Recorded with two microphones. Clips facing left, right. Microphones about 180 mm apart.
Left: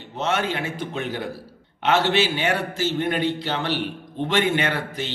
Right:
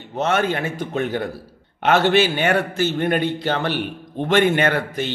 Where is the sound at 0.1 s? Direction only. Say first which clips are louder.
Right 4 dB; 55° right (ahead or behind).